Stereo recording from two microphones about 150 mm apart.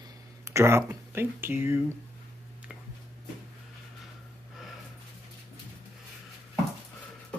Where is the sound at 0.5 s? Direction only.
20° right (ahead or behind).